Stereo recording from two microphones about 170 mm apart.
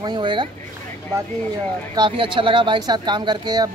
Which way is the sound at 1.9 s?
25° right (ahead or behind).